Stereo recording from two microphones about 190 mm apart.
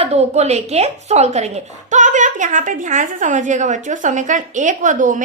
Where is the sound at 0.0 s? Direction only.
35° right (ahead or behind).